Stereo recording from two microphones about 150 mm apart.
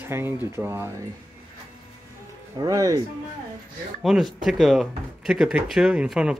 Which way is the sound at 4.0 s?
Centre (ahead or behind).